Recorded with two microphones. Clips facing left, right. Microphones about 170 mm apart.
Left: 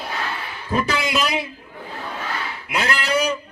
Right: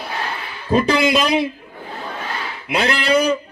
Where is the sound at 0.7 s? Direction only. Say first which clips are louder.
Right 6 dB; 30° right (ahead or behind).